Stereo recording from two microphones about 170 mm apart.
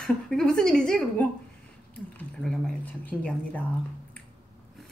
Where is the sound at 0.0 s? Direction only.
Centre (ahead or behind).